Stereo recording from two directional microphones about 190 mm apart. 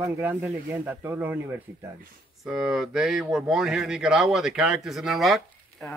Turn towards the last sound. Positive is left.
turn(degrees=10)  # may be behind; listen again after turning